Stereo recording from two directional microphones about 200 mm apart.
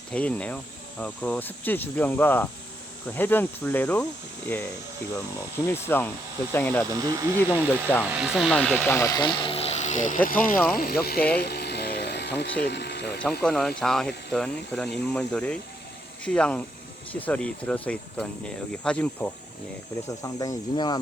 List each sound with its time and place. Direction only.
0.1 s speech: 5° left (ahead or behind)
5.6 s speech: 10° left (ahead or behind)
6.9 s speech: 15° right (ahead or behind)
7.7 s speech: 10° left (ahead or behind); by 11.3 s 50° left (ahead or behind)
11.3 s a sound: 55° left (ahead or behind)
12.6 s speech: 55° left (ahead or behind)
13.4 s speech: 5° left (ahead or behind)
20.2 s speech: 20° left (ahead or behind)